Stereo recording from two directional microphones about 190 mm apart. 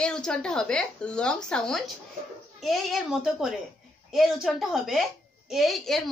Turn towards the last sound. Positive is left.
turn(degrees=0)  # may be behind; listen again after turning